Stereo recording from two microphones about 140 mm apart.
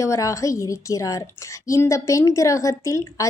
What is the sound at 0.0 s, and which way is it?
A woman's voice, 20° left (ahead or behind).